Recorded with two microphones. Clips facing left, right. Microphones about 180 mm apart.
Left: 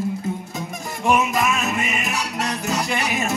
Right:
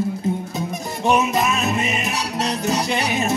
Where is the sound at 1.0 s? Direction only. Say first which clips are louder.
Right 1 dB; 25° right (ahead or behind).